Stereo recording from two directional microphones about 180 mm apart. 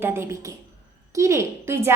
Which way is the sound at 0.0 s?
15° right (ahead or behind).